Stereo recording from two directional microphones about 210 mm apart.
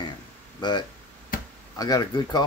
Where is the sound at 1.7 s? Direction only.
20° left (ahead or behind).